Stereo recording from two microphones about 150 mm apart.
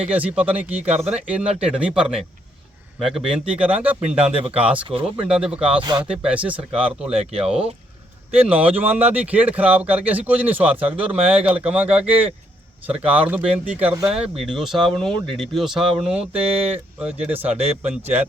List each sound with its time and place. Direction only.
0.1 s speech: 10° right (ahead or behind)
0.9 s speech: 45° right (ahead or behind)
1.3 s speech: 5° right (ahead or behind)
4.8 s speech: 35° right (ahead or behind)
5.3 s speech: 5° right (ahead or behind)
8.3 s speech: 10° right (ahead or behind)